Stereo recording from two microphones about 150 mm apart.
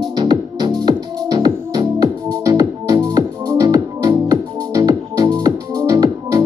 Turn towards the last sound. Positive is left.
turn(degrees=-25)  # may be behind; listen again after turning